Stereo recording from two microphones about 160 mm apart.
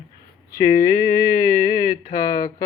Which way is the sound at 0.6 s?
20° left (ahead or behind).